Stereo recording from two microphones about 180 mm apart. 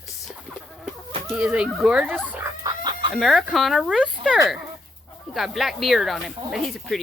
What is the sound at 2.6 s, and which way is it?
Chicken, 20° right (ahead or behind).